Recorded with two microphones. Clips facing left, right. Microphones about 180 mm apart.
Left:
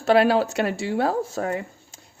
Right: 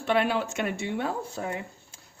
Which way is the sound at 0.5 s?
75° left (ahead or behind).